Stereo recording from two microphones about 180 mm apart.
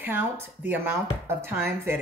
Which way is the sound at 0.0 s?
10° right (ahead or behind).